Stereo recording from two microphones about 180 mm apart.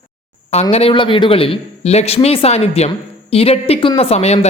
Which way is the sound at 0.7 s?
30° left (ahead or behind).